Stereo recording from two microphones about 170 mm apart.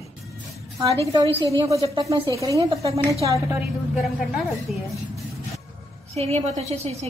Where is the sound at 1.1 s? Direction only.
25° right (ahead or behind).